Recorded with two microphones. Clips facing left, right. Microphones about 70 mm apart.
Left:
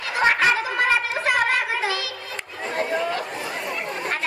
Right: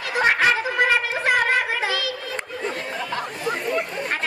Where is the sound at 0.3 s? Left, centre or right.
Right.